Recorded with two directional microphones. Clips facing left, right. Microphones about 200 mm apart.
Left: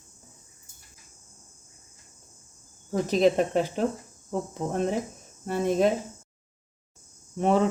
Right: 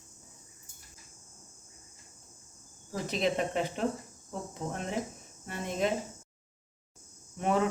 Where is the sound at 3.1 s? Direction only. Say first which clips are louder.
Left 8 dB; 40° left (ahead or behind).